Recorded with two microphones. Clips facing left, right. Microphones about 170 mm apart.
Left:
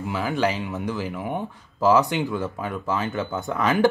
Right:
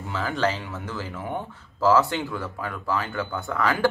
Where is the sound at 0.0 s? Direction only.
15° left (ahead or behind).